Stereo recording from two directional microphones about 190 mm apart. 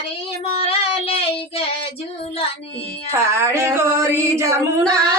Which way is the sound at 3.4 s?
15° right (ahead or behind).